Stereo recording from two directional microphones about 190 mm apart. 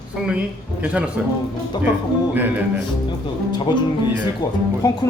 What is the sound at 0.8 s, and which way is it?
Speech, 5° right (ahead or behind).